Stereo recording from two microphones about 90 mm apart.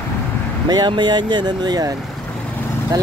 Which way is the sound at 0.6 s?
55° right (ahead or behind).